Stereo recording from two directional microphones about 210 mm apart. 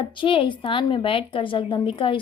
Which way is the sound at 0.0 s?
25° left (ahead or behind).